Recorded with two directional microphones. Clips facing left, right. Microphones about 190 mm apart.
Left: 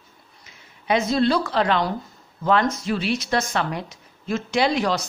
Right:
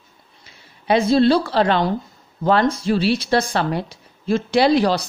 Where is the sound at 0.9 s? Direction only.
30° right (ahead or behind).